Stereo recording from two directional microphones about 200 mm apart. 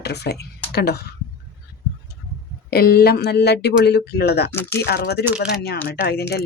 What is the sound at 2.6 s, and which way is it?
Speech, 50° left (ahead or behind).